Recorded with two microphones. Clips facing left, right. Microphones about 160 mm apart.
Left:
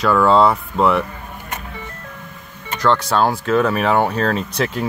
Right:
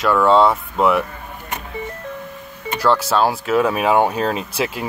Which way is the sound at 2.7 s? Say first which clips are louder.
Even; 5° right (ahead or behind).